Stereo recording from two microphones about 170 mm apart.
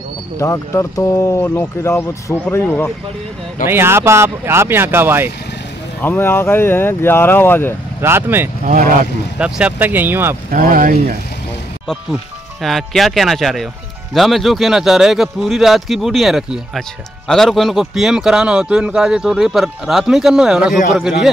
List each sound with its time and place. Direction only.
0.4 s speech: 15° left (ahead or behind)
3.6 s speech: 15° right (ahead or behind)
5.9 s speech: 10° left (ahead or behind)
8.0 s speech: 15° right (ahead or behind)
8.6 s speech: 50° right (ahead or behind)
9.4 s speech: 10° right (ahead or behind)
10.5 s speech: 55° right (ahead or behind)
12.6 s a man's voice: centre (ahead or behind)